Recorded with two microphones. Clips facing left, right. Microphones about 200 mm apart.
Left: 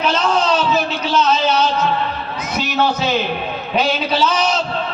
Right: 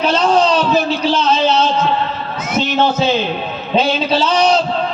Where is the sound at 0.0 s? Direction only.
30° right (ahead or behind).